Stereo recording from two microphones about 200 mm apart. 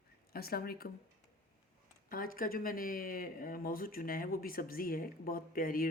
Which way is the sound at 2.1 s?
45° left (ahead or behind).